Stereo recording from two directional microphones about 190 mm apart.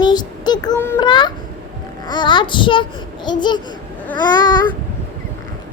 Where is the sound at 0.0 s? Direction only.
20° left (ahead or behind).